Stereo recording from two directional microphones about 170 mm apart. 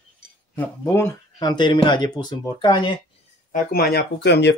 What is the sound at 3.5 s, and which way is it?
Speech, 65° left (ahead or behind).